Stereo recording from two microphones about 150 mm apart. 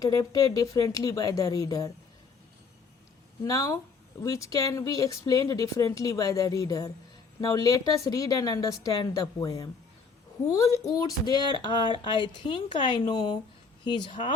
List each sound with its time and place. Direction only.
0.0 s speech: 25° left (ahead or behind)
3.4 s speech: 25° left (ahead or behind)
10.5 s speech: 20° left (ahead or behind)